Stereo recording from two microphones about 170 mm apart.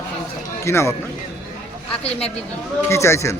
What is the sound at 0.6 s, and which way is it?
Speech, 15° left (ahead or behind).